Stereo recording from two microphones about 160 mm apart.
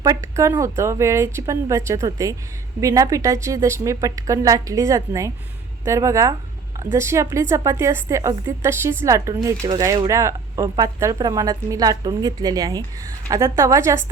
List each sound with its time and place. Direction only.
0.0 s a woman's voice: 20° right (ahead or behind)